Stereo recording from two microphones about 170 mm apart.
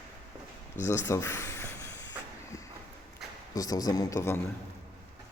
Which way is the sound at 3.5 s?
20° left (ahead or behind).